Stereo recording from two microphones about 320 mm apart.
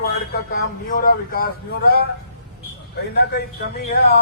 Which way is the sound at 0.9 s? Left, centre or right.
Left.